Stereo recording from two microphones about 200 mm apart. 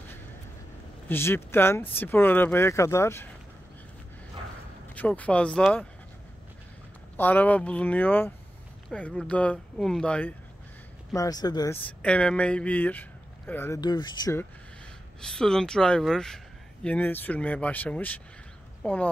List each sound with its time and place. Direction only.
1.0 s speech: 10° left (ahead or behind)
4.9 s speech: 5° left (ahead or behind)
7.2 s speech: 10° left (ahead or behind)
11.1 s speech: 20° left (ahead or behind)
15.1 s speech: 5° left (ahead or behind)